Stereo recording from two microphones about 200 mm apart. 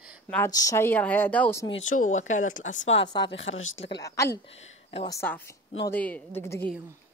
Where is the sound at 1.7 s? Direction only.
35° left (ahead or behind).